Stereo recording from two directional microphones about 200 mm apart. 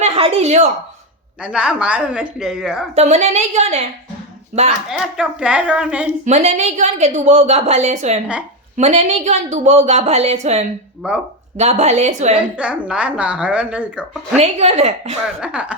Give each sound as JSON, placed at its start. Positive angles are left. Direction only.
{"t": 0.0, "sound": "speech", "side_deg": -30}
{"t": 1.4, "sound": "a woman's voice", "side_deg": -5}
{"t": 2.9, "sound": "a woman's voice", "side_deg": -35}
{"t": 4.9, "sound": "a woman's voice", "side_deg": -5}
{"t": 6.2, "sound": "a woman's voice", "side_deg": -35}
{"t": 11.0, "sound": "a woman's voice", "side_deg": -5}
{"t": 11.5, "sound": "a woman's voice", "side_deg": -35}
{"t": 12.4, "sound": "a woman's voice", "side_deg": -5}
{"t": 14.3, "sound": "a woman's voice", "side_deg": -30}
{"t": 15.4, "sound": "a woman's voice", "side_deg": -5}